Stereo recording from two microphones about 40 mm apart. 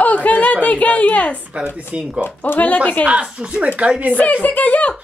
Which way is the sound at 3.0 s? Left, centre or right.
Right.